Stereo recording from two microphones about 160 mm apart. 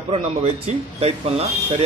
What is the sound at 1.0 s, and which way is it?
Speech, 40° right (ahead or behind).